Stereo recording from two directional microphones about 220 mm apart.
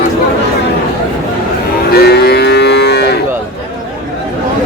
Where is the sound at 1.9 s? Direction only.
45° left (ahead or behind).